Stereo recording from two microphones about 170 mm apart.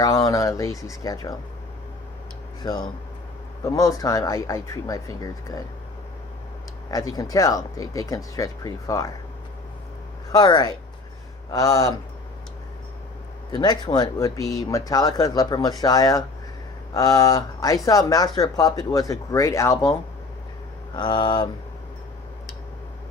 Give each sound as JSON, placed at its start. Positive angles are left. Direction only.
{"t": 0.0, "sound": "speech", "side_deg": 20}
{"t": 2.6, "sound": "speech", "side_deg": 25}
{"t": 6.9, "sound": "speech", "side_deg": 20}
{"t": 10.3, "sound": "speech", "side_deg": 25}
{"t": 13.5, "sound": "speech", "side_deg": 25}
{"t": 20.9, "sound": "speech", "side_deg": 25}